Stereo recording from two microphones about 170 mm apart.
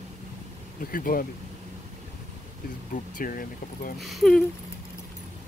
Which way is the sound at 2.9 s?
55° left (ahead or behind).